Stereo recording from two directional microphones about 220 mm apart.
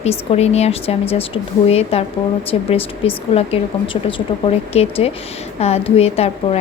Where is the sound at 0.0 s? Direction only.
30° left (ahead or behind).